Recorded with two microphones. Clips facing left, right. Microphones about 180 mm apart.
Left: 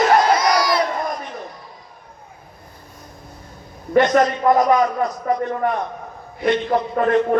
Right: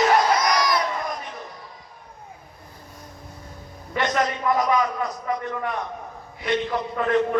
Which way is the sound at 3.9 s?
45° left (ahead or behind).